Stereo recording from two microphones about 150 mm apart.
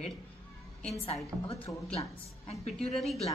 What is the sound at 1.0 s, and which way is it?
A woman's voice, 40° left (ahead or behind).